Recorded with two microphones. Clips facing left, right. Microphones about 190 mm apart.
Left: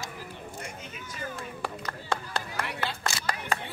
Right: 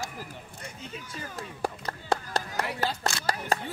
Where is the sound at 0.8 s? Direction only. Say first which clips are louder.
Left 1 dB; 30° right (ahead or behind).